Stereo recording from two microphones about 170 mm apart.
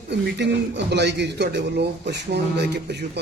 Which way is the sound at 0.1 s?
90° right.